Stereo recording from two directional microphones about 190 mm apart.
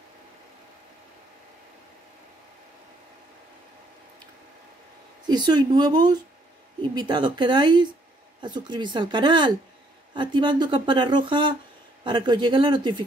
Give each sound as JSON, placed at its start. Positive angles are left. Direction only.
{"t": 5.2, "sound": "speech", "side_deg": -20}